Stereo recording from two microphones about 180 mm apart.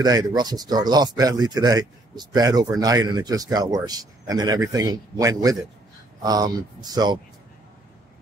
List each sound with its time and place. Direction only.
0.0 s speech: 20° right (ahead or behind)